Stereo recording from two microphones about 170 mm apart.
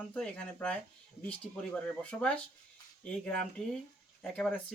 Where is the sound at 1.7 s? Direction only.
5° left (ahead or behind).